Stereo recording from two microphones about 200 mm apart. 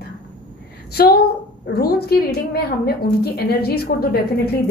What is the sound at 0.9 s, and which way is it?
A woman's voice, 50° left (ahead or behind).